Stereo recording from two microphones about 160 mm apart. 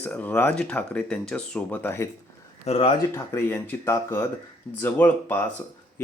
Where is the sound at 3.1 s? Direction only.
15° left (ahead or behind).